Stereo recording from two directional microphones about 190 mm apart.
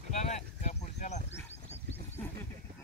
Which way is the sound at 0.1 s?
35° left (ahead or behind).